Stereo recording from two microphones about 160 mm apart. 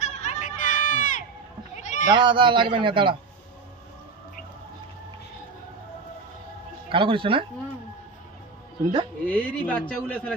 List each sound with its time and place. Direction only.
0.0 s crowd: 45° left (ahead or behind)
1.8 s a sound: 50° left (ahead or behind)
2.0 s speech: 30° right (ahead or behind)
6.9 s speech: 35° right (ahead or behind)
9.2 s a man's voice: 10° left (ahead or behind)